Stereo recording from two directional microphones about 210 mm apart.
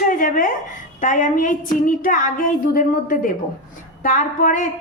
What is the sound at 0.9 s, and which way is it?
A woman's voice, 35° left (ahead or behind).